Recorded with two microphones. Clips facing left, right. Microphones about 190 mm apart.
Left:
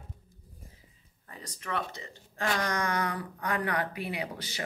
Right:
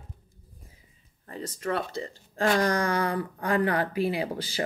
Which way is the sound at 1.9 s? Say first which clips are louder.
Right 10 dB; 30° right (ahead or behind).